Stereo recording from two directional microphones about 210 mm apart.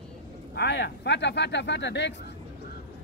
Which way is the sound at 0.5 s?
55° left (ahead or behind).